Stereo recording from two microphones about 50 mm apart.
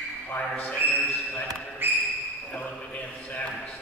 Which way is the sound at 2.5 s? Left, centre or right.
Left.